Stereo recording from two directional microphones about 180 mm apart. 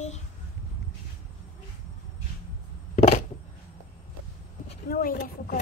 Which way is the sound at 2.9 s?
40° left (ahead or behind).